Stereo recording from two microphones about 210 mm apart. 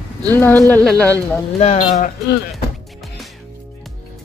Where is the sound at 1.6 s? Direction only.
35° left (ahead or behind).